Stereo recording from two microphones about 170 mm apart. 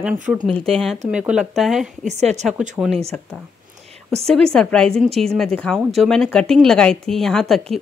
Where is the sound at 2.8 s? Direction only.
15° right (ahead or behind).